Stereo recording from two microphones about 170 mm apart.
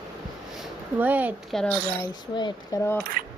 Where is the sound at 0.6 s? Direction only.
10° right (ahead or behind).